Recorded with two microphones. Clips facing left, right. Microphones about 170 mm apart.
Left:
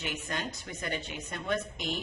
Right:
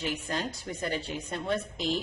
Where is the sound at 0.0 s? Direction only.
35° right (ahead or behind).